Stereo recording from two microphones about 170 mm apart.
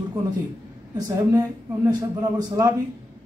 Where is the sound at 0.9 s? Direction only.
20° right (ahead or behind).